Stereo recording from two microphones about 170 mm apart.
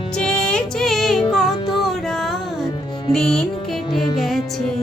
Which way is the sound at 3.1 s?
5° left (ahead or behind).